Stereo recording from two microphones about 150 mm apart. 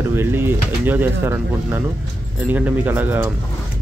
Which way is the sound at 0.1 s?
15° right (ahead or behind).